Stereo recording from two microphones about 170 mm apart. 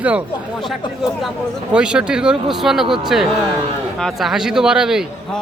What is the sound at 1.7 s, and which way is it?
A man's voice, 5° right (ahead or behind).